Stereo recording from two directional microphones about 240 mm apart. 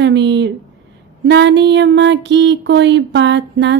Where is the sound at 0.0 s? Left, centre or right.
Right.